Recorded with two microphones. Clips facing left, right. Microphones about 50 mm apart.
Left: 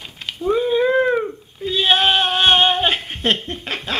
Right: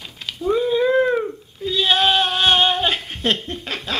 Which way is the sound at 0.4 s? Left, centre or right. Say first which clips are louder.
Left 1 dB; centre.